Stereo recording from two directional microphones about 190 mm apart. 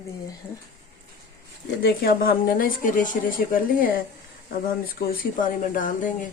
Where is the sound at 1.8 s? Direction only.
55° left (ahead or behind).